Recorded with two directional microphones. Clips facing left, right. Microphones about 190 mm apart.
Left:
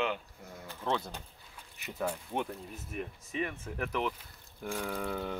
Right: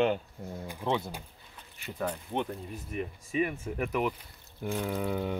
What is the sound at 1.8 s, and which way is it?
Speech, 10° left (ahead or behind).